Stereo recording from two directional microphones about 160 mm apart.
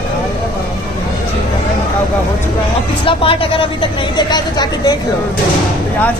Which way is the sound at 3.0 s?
35° left (ahead or behind).